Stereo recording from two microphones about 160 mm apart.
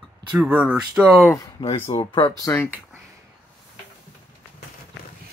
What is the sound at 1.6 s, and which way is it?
Speech, 35° left (ahead or behind).